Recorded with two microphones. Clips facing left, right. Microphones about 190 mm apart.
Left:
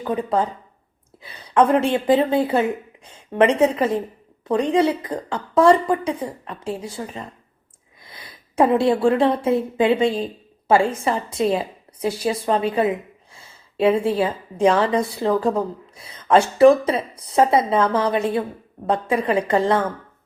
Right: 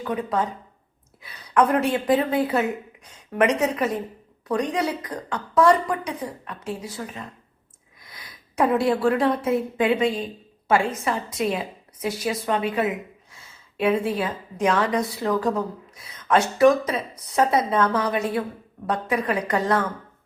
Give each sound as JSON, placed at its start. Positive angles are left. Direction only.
{"t": 0.0, "sound": "a woman's voice", "side_deg": 30}